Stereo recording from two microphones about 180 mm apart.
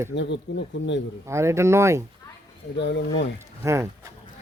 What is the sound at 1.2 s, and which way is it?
Speech, 15° right (ahead or behind).